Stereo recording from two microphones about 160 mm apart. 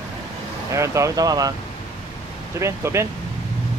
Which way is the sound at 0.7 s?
20° right (ahead or behind).